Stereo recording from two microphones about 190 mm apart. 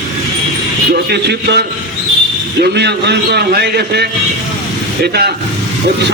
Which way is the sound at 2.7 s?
60° right (ahead or behind).